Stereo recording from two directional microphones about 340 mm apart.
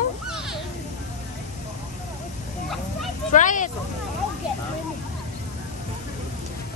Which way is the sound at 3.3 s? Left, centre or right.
Left.